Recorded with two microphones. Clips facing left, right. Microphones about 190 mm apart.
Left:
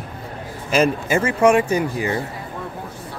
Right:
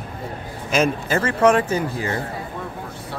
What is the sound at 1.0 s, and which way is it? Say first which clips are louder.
Speech: left 1 dB; 10° left (ahead or behind).